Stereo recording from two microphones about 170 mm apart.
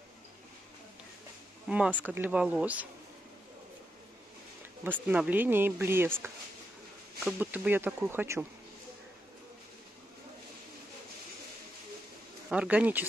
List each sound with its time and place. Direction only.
1.7 s speech: 5° right (ahead or behind)
4.8 s speech: 10° right (ahead or behind)
12.4 s speech: 5° right (ahead or behind)